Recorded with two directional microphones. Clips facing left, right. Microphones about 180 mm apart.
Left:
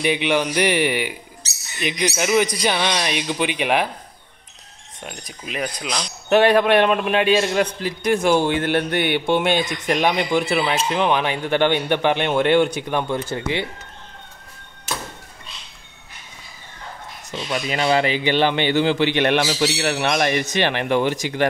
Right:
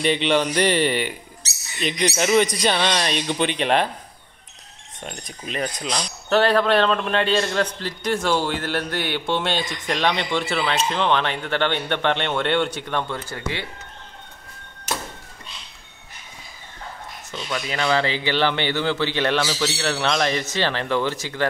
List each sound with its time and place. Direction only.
0.0 s a man's voice: 10° left (ahead or behind)
5.0 s speech: 5° left (ahead or behind)
6.2 s a man's voice: 15° left (ahead or behind)
17.3 s a man's voice: 20° left (ahead or behind)